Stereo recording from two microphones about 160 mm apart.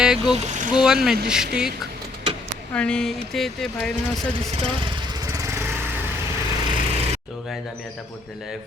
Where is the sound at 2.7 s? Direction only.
5° left (ahead or behind).